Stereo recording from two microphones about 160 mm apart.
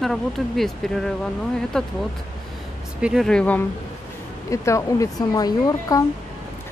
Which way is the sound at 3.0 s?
Centre (ahead or behind).